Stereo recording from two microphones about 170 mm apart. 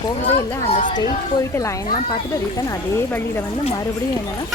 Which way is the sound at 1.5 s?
20° left (ahead or behind).